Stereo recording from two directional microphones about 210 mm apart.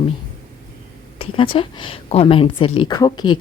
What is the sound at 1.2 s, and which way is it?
A woman's voice, 25° left (ahead or behind).